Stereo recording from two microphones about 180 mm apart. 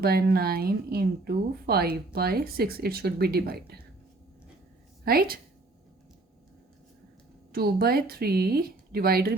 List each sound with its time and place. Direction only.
0.0 s speech: 60° right (ahead or behind)
5.0 s speech: 55° right (ahead or behind)
7.5 s speech: 60° right (ahead or behind)